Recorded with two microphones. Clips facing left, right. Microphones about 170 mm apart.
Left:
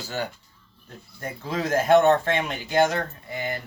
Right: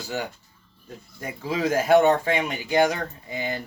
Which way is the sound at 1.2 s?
10° right (ahead or behind).